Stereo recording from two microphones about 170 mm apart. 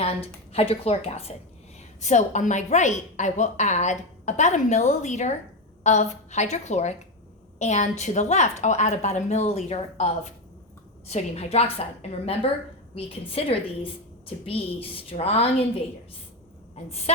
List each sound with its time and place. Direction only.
0.5 s a woman's voice: 35° left (ahead or behind)
11.1 s a woman's voice: 35° left (ahead or behind)
16.7 s a woman's voice: 40° left (ahead or behind)